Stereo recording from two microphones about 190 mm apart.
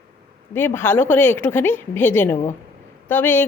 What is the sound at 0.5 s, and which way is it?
A woman's voice, 10° left (ahead or behind).